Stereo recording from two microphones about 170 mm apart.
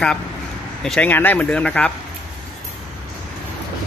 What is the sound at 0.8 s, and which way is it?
Speech, 5° left (ahead or behind).